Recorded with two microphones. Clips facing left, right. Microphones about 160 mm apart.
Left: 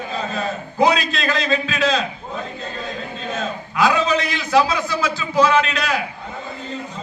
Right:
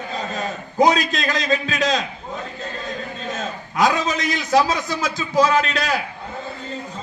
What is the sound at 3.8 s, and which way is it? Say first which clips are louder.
A man's voice: left 2 dB; 40° right (ahead or behind).